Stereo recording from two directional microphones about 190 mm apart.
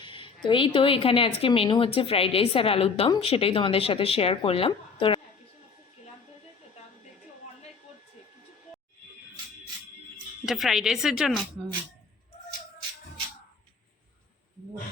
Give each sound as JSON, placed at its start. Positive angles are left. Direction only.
{"t": 0.0, "sound": "a sound", "side_deg": 25}
{"t": 0.4, "sound": "a woman's voice", "side_deg": 25}
{"t": 10.4, "sound": "speech", "side_deg": 0}